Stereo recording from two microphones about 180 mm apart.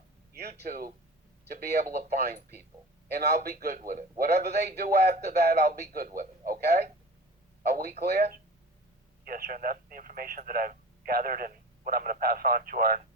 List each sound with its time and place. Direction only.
0.3 s a man's voice: 65° right (ahead or behind)
9.2 s speech: 55° right (ahead or behind)